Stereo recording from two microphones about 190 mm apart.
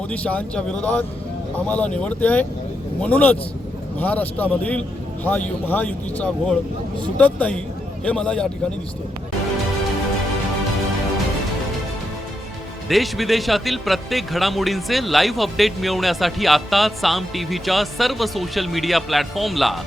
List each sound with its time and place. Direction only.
0.1 s a man's voice: 5° left (ahead or behind)
12.9 s a man's voice: centre (ahead or behind)